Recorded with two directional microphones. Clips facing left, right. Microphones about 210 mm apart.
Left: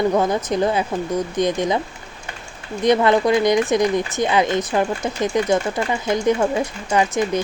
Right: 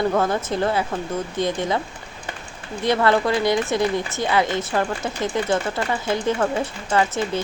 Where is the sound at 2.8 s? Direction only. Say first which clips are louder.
Left 3 dB; 20° left (ahead or behind).